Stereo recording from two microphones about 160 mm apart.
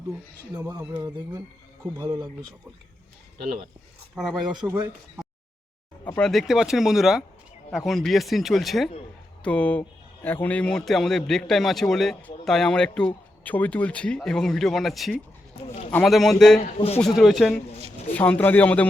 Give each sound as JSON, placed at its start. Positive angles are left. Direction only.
{"t": 1.0, "sound": "speech", "side_deg": -25}
{"t": 4.1, "sound": "a man's voice", "side_deg": 0}
{"t": 4.5, "sound": "speech", "side_deg": -25}
{"t": 6.1, "sound": "a man's voice", "side_deg": 5}
{"t": 16.7, "sound": "speech", "side_deg": 40}
{"t": 17.0, "sound": "a man's voice", "side_deg": 0}